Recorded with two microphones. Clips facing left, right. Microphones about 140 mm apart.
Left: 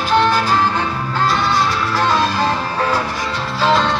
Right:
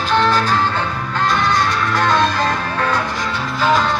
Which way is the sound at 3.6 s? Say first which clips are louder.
Left 1 dB; 25° left (ahead or behind).